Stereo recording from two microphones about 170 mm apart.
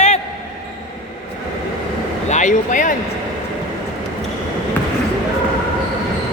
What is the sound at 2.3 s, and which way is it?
Speech, 45° left (ahead or behind).